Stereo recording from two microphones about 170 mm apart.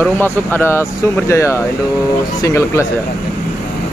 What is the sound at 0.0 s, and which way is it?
Speech, 10° left (ahead or behind).